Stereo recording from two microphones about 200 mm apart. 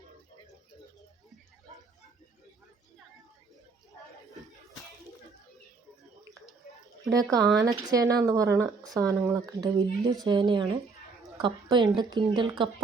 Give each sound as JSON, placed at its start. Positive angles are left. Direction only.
{"t": 7.1, "sound": "a woman's voice", "side_deg": -20}